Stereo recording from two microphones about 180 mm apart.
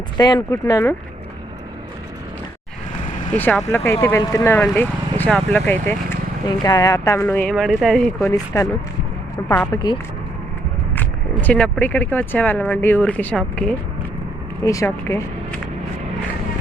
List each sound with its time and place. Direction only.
0.2 s speech: 25° left (ahead or behind)
3.3 s speech: 10° left (ahead or behind)
8.5 s speech: 15° left (ahead or behind)
10.9 s speech: 10° left (ahead or behind)
14.6 s speech: 15° left (ahead or behind)